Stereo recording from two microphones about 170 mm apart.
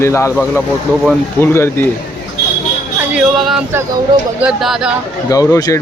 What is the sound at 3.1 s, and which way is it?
Speech, 5° right (ahead or behind).